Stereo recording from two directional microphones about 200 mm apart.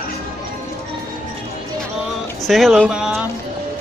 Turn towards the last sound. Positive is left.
turn(degrees=-5)  # may be behind; listen again after turning